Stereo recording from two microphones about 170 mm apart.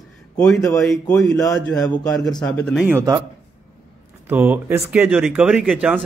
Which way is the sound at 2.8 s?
15° right (ahead or behind).